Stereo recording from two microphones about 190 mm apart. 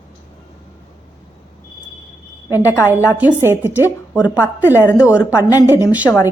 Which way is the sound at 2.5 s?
10° right (ahead or behind).